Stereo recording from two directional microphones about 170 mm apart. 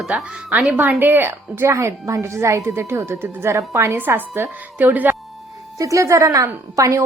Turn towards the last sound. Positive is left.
turn(degrees=-20)  # may be behind; listen again after turning